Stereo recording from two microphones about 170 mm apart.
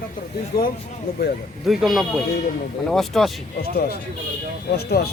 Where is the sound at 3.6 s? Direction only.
65° left (ahead or behind).